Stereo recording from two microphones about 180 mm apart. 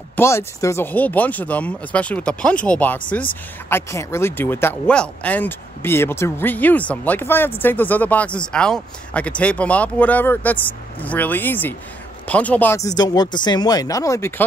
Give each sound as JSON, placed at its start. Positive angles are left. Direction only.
{"t": 0.1, "sound": "speech", "side_deg": 15}